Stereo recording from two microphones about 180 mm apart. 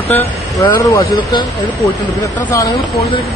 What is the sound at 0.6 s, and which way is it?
Speech, 20° left (ahead or behind).